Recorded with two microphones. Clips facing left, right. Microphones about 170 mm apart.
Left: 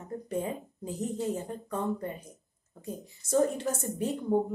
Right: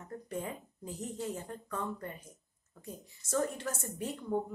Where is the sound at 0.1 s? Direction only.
20° left (ahead or behind).